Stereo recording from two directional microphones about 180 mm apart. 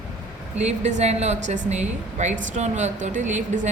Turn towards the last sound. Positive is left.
turn(degrees=-45)  # may be behind; listen again after turning